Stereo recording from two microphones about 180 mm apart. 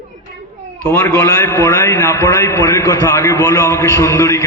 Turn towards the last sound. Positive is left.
turn(degrees=15)  # may be behind; listen again after turning